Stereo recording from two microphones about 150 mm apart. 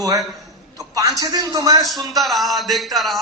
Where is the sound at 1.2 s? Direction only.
25° right (ahead or behind).